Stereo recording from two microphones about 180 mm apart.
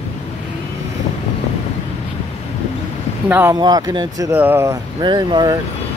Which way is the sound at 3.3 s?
10° right (ahead or behind).